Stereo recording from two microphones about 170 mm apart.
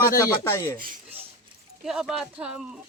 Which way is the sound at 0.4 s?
15° left (ahead or behind).